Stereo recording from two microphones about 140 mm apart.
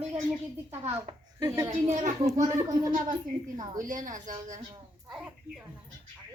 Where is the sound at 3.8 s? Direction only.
65° right (ahead or behind).